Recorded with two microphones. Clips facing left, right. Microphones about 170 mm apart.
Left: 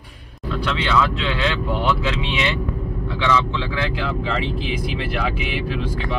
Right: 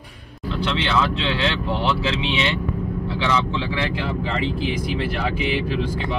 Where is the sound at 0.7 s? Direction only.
30° right (ahead or behind).